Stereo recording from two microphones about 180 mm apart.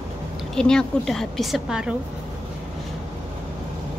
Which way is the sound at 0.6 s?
5° left (ahead or behind).